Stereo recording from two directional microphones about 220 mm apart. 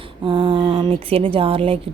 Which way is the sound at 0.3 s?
20° right (ahead or behind).